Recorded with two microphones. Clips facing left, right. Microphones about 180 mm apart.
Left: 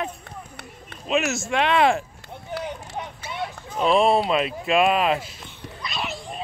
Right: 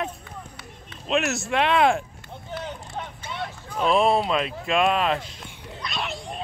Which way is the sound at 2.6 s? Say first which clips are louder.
Left 2 dB; 10° left (ahead or behind).